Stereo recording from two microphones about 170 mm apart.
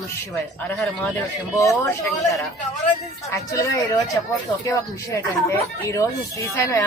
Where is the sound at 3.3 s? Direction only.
20° left (ahead or behind).